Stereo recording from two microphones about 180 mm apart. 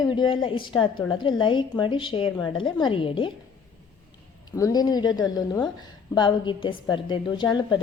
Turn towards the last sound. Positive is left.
turn(degrees=25)  # may be behind; listen again after turning